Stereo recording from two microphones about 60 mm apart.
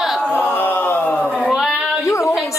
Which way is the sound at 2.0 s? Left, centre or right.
Left.